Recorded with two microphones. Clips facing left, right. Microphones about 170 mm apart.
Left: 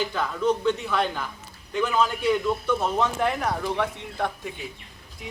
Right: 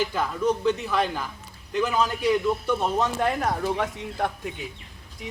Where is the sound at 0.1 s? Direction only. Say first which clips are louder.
Even; 10° right (ahead or behind).